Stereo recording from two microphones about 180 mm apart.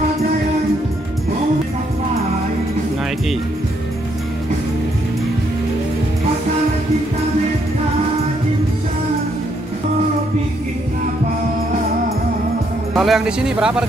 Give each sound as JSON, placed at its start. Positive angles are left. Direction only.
{"t": 12.9, "sound": "speech", "side_deg": 0}